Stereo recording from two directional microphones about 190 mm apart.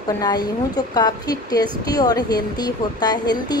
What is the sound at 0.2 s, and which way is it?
Speech, 20° left (ahead or behind).